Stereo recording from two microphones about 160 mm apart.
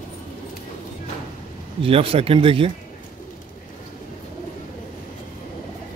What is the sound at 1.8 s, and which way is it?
Speech, 35° right (ahead or behind).